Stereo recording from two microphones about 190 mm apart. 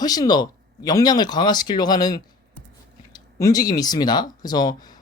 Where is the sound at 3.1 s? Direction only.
20° left (ahead or behind).